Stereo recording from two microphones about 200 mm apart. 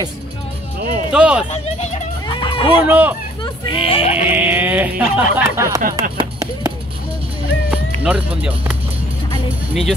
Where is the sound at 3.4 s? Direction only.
25° left (ahead or behind).